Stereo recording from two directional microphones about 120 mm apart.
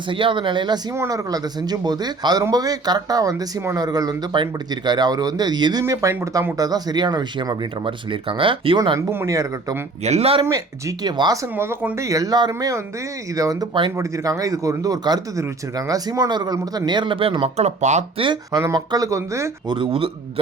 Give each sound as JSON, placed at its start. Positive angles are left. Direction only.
{"t": 0.1, "sound": "speech", "side_deg": -45}
{"t": 5.8, "sound": "speech", "side_deg": -25}
{"t": 6.6, "sound": "speech", "side_deg": -35}
{"t": 9.0, "sound": "speech", "side_deg": -25}
{"t": 10.0, "sound": "speech", "side_deg": -60}
{"t": 10.4, "sound": "speech", "side_deg": -30}
{"t": 11.5, "sound": "speech", "side_deg": -20}
{"t": 12.0, "sound": "speech", "side_deg": -30}
{"t": 18.5, "sound": "speech", "side_deg": -30}
{"t": 19.6, "sound": "speech", "side_deg": -45}